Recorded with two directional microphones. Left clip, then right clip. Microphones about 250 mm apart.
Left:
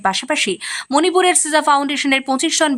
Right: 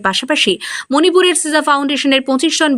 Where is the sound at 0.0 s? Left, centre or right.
Centre.